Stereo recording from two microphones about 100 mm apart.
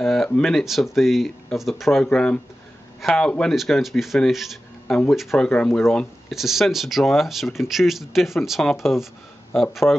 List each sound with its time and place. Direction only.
0.0 s speech: centre (ahead or behind)
2.0 s speech: 10° left (ahead or behind)
5.4 s speech: 10° left (ahead or behind)